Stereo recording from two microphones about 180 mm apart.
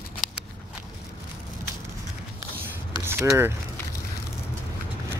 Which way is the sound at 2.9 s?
15° right (ahead or behind).